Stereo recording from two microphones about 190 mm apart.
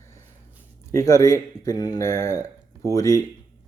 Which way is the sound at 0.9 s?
15° left (ahead or behind).